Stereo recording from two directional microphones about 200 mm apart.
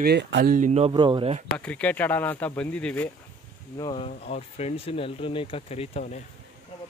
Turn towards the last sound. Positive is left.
turn(degrees=30)  # may be behind; listen again after turning